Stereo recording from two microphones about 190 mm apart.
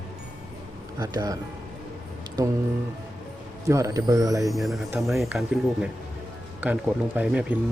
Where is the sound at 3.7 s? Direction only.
15° right (ahead or behind).